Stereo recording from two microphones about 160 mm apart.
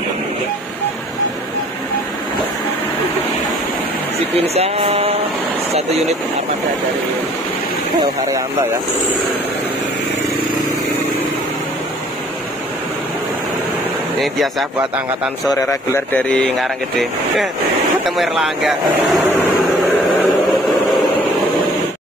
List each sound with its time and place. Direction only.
4.6 s mantra: 40° right (ahead or behind)
14.2 s speech: centre (ahead or behind)
15.5 s speech: 20° left (ahead or behind); by 19.2 s centre (ahead or behind)